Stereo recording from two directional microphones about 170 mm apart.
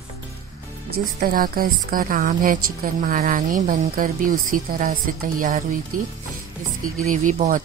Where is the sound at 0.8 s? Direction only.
55° right (ahead or behind).